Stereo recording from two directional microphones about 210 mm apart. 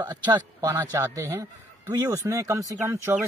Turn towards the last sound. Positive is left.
turn(degrees=-10)  # may be behind; listen again after turning